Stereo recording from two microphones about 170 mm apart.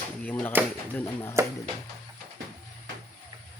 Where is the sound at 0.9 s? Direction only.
15° left (ahead or behind).